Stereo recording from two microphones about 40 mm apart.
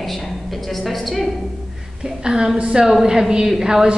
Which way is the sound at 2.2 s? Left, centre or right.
Centre.